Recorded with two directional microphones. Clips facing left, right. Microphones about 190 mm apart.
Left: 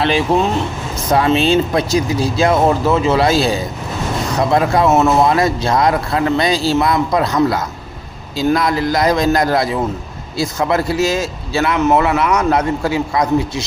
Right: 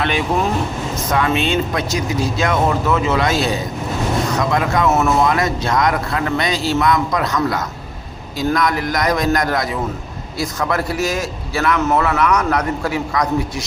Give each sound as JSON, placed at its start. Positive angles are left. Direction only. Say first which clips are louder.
{"t": 0.0, "sound": "a man's voice", "louder": "left 4 dB", "side_deg": 30}